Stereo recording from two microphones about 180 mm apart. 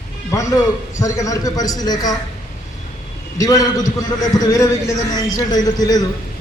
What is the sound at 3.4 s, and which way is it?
A man's voice, 20° left (ahead or behind).